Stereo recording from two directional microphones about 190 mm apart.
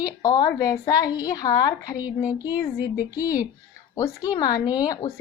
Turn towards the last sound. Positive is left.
turn(degrees=20)  # may be behind; listen again after turning